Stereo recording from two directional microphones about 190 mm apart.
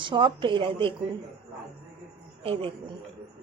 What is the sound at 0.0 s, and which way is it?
Speech, 25° right (ahead or behind).